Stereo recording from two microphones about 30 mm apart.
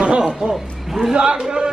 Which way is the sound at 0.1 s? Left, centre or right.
Right.